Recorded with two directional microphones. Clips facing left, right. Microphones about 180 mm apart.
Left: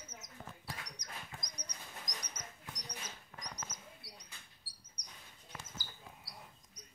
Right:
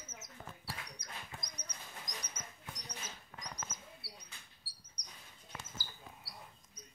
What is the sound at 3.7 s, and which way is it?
Bird, 15° left (ahead or behind).